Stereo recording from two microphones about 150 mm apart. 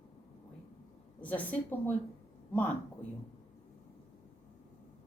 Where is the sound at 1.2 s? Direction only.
10° left (ahead or behind).